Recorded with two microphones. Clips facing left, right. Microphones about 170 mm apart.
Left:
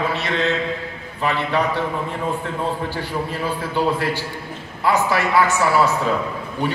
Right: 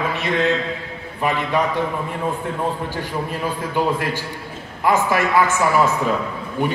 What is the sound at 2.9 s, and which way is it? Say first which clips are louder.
A man's voice: even; 15° right (ahead or behind).